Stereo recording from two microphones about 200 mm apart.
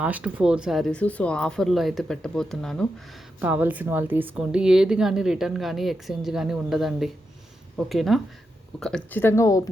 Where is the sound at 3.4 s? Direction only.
10° right (ahead or behind).